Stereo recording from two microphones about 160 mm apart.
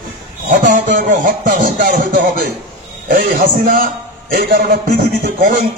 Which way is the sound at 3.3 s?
60° right (ahead or behind).